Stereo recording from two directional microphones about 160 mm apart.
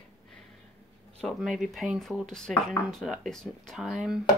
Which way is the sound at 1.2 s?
Centre (ahead or behind).